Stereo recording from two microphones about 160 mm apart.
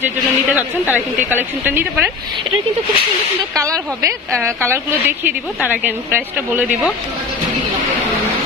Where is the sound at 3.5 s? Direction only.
20° right (ahead or behind).